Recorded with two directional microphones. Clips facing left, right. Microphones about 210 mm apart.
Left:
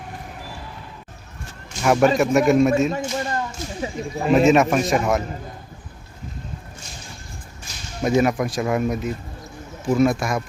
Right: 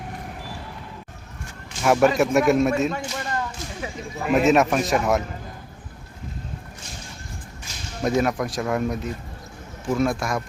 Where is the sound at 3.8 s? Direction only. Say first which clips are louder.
Left 5 dB; 30° left (ahead or behind).